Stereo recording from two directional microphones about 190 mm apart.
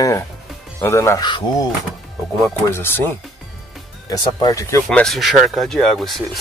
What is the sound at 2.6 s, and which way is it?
Speech, 10° left (ahead or behind).